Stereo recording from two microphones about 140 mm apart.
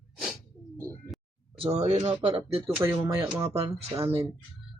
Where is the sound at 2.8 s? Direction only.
20° right (ahead or behind).